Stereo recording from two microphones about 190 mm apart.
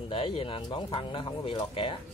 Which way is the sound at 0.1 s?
30° left (ahead or behind).